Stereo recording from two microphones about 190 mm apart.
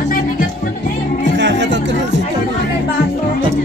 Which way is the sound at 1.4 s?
70° right (ahead or behind).